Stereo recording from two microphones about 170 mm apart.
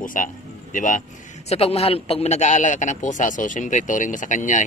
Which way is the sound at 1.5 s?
35° left (ahead or behind).